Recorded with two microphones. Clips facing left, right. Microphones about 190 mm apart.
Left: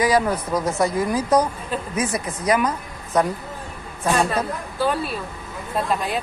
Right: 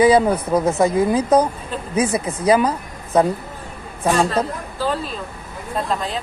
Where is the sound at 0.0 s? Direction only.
30° right (ahead or behind).